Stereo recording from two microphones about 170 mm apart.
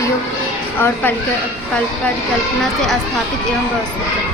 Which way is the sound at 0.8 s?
10° left (ahead or behind).